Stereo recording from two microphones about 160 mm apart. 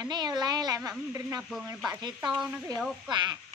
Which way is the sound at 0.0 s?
25° right (ahead or behind).